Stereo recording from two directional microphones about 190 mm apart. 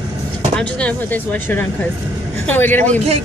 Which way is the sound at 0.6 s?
5° left (ahead or behind).